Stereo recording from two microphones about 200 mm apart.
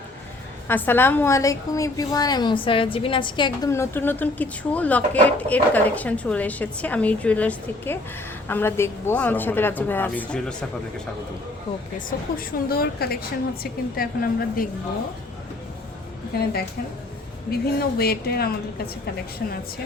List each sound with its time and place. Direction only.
0.7 s a woman's voice: 10° left (ahead or behind)
12.1 s a woman's voice: 45° left (ahead or behind)
16.4 s a woman's voice: 50° left (ahead or behind)